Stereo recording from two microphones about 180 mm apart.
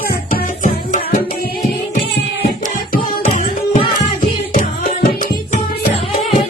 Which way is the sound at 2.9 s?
50° left (ahead or behind).